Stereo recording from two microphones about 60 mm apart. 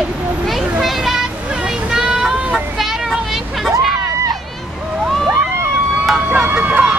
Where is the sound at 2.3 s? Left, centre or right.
Centre.